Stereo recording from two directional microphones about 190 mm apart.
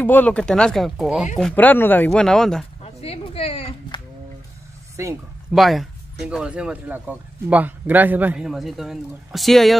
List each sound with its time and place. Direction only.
0.0 s a man's voice: 10° left (ahead or behind)
1.4 s speech: 10° left (ahead or behind)
2.8 s a sound: 30° left (ahead or behind)
5.0 s speech: 15° right (ahead or behind)
5.5 s a man's voice: centre (ahead or behind)